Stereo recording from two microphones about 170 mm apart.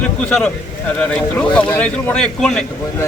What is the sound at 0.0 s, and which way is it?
Speech, 5° left (ahead or behind).